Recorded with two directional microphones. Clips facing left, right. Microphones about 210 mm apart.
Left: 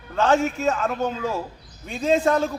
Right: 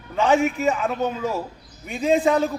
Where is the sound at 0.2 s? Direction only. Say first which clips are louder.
Right 1 dB; 10° right (ahead or behind).